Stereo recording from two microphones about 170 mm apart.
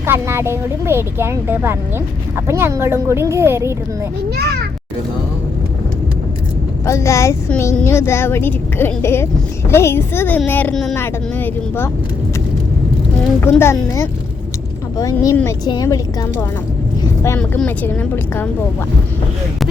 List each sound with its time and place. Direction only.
0.0 s speech: 15° right (ahead or behind)
4.4 s a child's voice: 70° right (ahead or behind)
6.8 s speech: 15° left (ahead or behind)
13.4 s speech: 15° left (ahead or behind)
14.9 s speech: 20° left (ahead or behind)
17.3 s speech: 10° left (ahead or behind)